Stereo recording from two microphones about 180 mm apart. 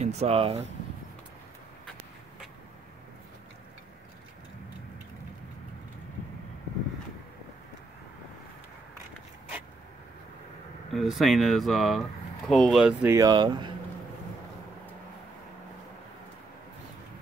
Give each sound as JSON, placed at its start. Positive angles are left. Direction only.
{"t": 0.0, "sound": "speech", "side_deg": -35}
{"t": 10.9, "sound": "speech", "side_deg": 0}
{"t": 13.1, "sound": "speech", "side_deg": -20}